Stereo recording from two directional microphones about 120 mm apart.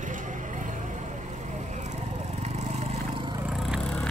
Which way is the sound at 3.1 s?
45° right (ahead or behind).